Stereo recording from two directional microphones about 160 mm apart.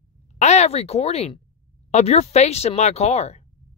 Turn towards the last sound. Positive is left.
turn(degrees=45)  # may be behind; listen again after turning